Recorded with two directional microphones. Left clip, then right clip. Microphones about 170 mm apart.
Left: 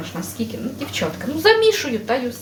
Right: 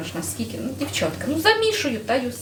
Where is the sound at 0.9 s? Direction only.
20° left (ahead or behind).